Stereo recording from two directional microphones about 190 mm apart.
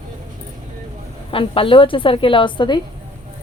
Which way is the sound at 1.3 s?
30° left (ahead or behind).